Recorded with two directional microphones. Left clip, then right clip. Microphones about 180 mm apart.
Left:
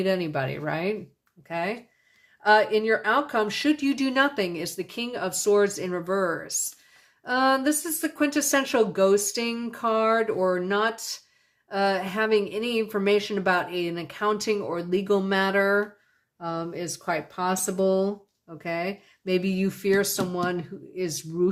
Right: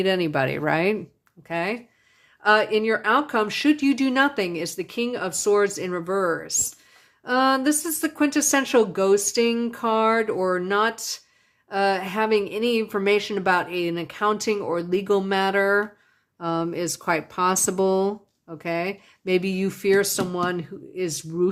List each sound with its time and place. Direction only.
0.0 s speech: 30° right (ahead or behind)
0.3 s speech: 45° right (ahead or behind)
1.5 s speech: 35° right (ahead or behind)
16.4 s speech: 45° right (ahead or behind); by 21.5 s 20° right (ahead or behind)